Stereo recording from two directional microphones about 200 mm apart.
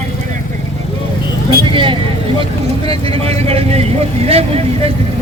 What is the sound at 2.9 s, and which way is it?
A man's voice, 30° right (ahead or behind).